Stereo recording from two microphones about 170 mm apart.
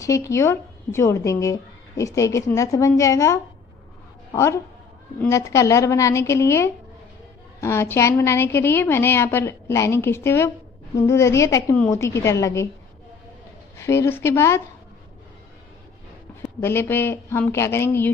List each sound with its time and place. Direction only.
0.0 s a woman's voice: 20° left (ahead or behind)
5.2 s a woman's voice: 15° left (ahead or behind)
13.7 s a woman's voice: 15° left (ahead or behind)
16.5 s a woman's voice: 15° left (ahead or behind)